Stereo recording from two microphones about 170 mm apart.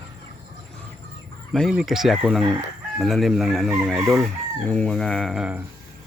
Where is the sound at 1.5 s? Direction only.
Centre (ahead or behind).